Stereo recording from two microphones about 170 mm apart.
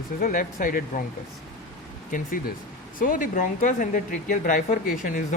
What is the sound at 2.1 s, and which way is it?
Speech, 50° left (ahead or behind).